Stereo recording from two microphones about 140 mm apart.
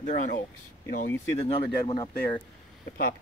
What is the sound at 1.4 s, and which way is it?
Speech, 40° left (ahead or behind).